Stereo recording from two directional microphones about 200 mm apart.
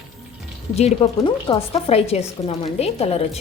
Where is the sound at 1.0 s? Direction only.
30° left (ahead or behind).